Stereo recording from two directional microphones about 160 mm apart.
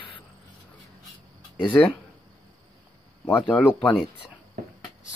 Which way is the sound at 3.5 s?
10° left (ahead or behind).